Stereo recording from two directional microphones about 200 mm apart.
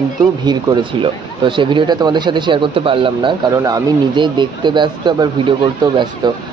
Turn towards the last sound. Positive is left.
turn(degrees=-20)  # may be behind; listen again after turning